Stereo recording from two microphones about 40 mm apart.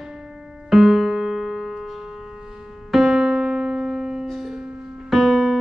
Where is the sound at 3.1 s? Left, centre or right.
Centre.